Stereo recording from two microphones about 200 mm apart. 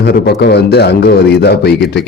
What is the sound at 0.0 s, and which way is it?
A man's voice, 55° left (ahead or behind).